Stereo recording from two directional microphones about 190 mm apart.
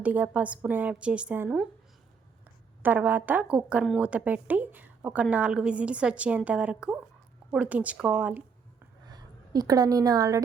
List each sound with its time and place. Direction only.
0.0 s a woman's voice: 10° right (ahead or behind)
2.8 s a woman's voice: 10° right (ahead or behind)
9.0 s a woman's voice: 20° right (ahead or behind)